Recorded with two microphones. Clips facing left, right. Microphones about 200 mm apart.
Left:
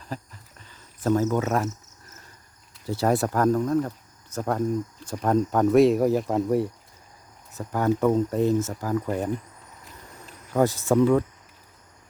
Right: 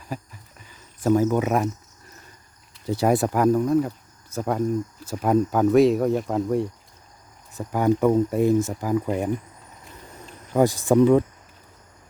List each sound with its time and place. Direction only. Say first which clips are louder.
0.1 s speech: right 2 dB; 10° right (ahead or behind)
0.6 s cricket: right 3 dB; 10° right (ahead or behind)
2.8 s speech: right 2 dB; 15° right (ahead or behind); by 6.7 s centre (ahead or behind)
7.5 s speech: right 3 dB; 15° right (ahead or behind)
10.5 s speech: right 3 dB; 15° right (ahead or behind)